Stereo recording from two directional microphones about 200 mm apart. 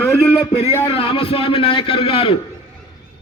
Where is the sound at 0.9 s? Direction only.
25° left (ahead or behind).